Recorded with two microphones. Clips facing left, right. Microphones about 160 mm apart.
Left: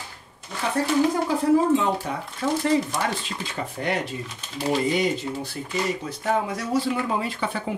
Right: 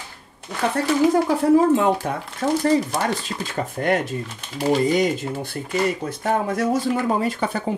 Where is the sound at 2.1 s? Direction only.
55° right (ahead or behind).